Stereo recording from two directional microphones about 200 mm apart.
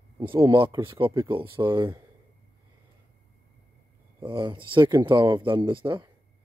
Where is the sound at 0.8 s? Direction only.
25° right (ahead or behind).